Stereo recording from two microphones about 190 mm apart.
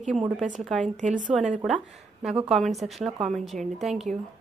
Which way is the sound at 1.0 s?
40° right (ahead or behind).